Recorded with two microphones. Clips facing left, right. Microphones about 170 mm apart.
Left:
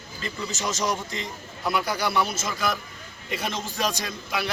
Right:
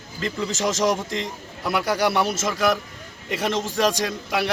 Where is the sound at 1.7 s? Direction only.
80° right.